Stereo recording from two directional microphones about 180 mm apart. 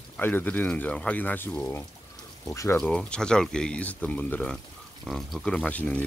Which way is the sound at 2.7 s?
5° left (ahead or behind).